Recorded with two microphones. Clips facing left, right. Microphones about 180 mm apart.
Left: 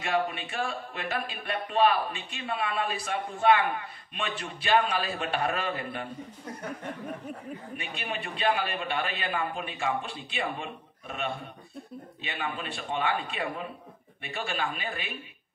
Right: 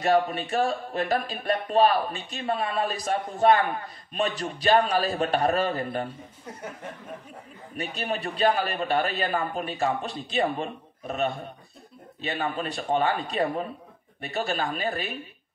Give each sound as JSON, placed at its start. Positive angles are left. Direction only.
{"t": 0.0, "sound": "speech", "side_deg": -40}
{"t": 7.7, "sound": "speech", "side_deg": -40}